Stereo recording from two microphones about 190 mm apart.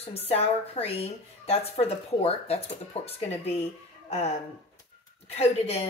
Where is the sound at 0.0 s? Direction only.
30° left (ahead or behind).